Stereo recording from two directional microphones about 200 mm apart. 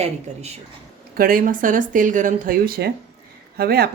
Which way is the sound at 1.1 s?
45° right (ahead or behind).